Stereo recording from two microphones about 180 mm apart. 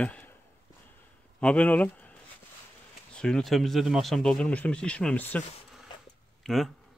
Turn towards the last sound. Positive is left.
turn(degrees=0)  # may be behind; listen again after turning